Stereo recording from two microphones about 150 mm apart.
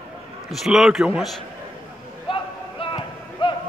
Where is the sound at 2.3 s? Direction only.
35° left (ahead or behind).